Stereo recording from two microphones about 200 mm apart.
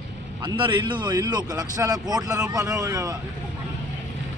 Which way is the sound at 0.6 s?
25° right (ahead or behind).